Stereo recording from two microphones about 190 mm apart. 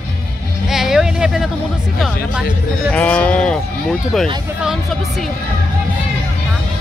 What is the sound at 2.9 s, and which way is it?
Speech, 5° left (ahead or behind).